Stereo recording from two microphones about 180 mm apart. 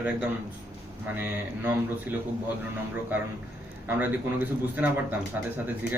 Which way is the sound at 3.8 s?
10° right (ahead or behind).